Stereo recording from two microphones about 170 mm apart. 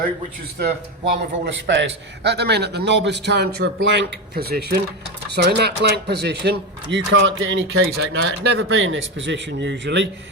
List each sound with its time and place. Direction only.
1.2 s a man's voice: 90° right
6.9 s a man's voice: 90° right; by 8.3 s 70° right (ahead or behind)
8.4 s a man's voice: 85° right